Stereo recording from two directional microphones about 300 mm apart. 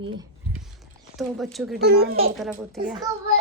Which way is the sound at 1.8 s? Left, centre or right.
Right.